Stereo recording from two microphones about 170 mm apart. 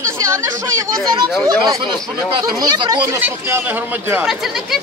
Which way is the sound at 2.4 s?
25° right (ahead or behind).